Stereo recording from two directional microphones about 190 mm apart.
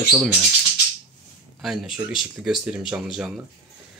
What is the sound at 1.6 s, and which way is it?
Speech, centre (ahead or behind).